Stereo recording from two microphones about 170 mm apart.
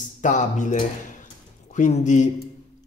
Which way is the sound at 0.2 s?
45° left (ahead or behind).